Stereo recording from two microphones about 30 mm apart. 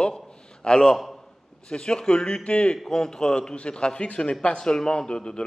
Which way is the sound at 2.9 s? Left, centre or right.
Left.